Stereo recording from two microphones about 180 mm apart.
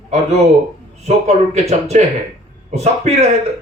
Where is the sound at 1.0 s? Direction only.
40° right (ahead or behind).